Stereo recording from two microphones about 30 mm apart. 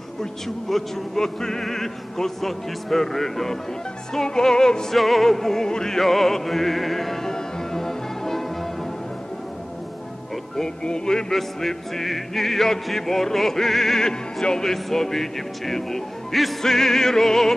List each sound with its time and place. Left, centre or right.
0.2 s music: centre
4.9 s music: centre
5.7 s music: left
5.9 s music: centre
7.2 s music: centre
10.8 s music: left
11.3 s music: centre